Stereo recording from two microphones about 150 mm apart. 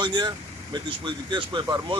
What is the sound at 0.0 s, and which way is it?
Speech, 30° right (ahead or behind).